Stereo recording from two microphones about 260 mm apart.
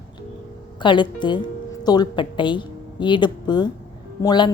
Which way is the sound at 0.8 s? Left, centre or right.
Centre.